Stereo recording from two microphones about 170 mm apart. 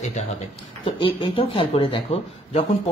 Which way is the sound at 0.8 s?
30° left (ahead or behind).